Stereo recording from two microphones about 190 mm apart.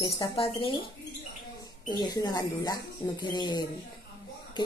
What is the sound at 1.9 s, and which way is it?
Speech, 20° left (ahead or behind).